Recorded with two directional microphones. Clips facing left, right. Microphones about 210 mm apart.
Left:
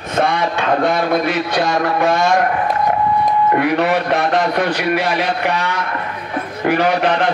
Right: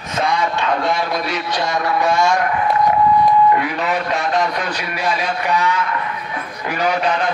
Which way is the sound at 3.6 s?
65° left (ahead or behind).